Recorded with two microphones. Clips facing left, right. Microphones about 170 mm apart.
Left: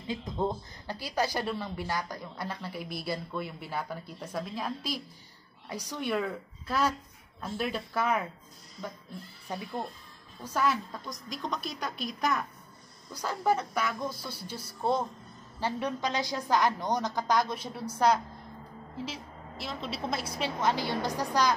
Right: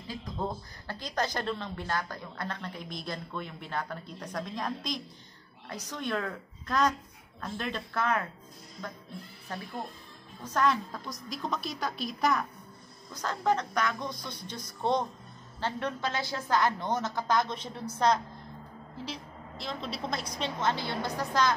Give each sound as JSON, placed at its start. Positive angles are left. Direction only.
{"t": 0.1, "sound": "speech", "side_deg": 20}
{"t": 0.9, "sound": "a woman's voice", "side_deg": 10}
{"t": 9.5, "sound": "a woman's voice", "side_deg": 15}